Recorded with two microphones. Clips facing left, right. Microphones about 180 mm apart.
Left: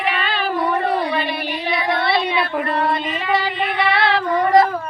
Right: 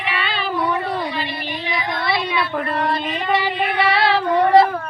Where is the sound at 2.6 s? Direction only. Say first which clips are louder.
Left 2 dB; 10° left (ahead or behind).